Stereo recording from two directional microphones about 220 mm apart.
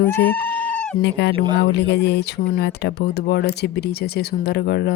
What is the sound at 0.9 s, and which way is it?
Speech, 50° left (ahead or behind).